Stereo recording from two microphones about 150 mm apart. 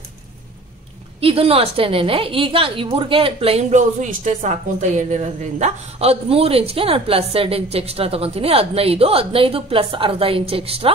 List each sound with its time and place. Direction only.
1.2 s a woman's voice: 40° right (ahead or behind)